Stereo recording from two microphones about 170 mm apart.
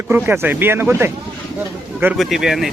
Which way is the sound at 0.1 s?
10° right (ahead or behind).